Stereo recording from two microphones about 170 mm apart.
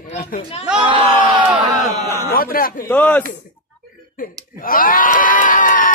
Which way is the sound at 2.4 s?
60° left (ahead or behind).